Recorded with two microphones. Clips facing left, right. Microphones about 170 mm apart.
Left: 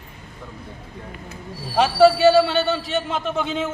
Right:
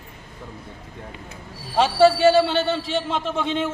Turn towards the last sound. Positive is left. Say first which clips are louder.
# even
turn(degrees=5)  # may be behind; listen again after turning